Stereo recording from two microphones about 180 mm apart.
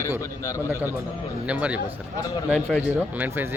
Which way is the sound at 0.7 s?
10° right (ahead or behind).